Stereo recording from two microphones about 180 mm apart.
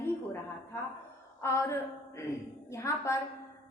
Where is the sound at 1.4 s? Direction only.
15° left (ahead or behind).